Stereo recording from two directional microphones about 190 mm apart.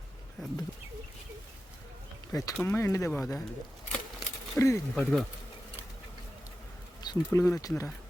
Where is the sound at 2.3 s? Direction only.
15° left (ahead or behind).